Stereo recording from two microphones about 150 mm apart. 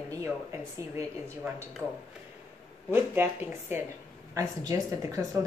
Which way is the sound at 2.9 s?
15° right (ahead or behind).